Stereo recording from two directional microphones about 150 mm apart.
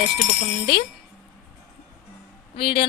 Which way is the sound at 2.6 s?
35° left (ahead or behind).